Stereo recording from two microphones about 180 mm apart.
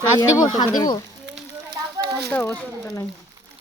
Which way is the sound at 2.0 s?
65° right (ahead or behind).